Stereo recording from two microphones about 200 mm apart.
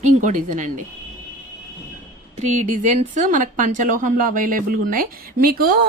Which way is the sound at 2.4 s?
40° right (ahead or behind).